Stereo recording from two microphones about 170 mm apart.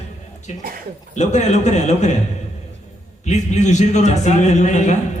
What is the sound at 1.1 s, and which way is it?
A man's voice, 45° left (ahead or behind).